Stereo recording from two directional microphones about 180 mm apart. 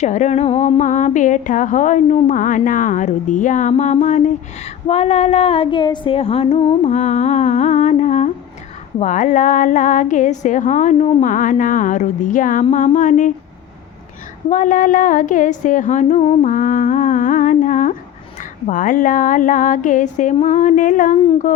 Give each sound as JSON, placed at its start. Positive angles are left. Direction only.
{"t": 0.0, "sound": "a woman's voice", "side_deg": 40}
{"t": 14.5, "sound": "a woman's voice", "side_deg": 45}